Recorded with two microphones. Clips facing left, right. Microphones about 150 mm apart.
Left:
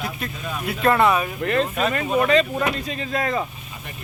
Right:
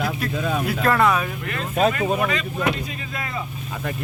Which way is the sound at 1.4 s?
35° left (ahead or behind).